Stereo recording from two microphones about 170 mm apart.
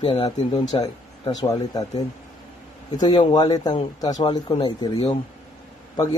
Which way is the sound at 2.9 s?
25° left (ahead or behind).